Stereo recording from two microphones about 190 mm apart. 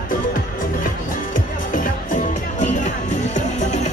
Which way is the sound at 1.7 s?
45° left (ahead or behind).